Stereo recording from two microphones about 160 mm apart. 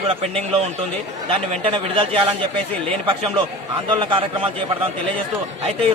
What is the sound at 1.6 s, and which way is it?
A man's voice, 35° right (ahead or behind).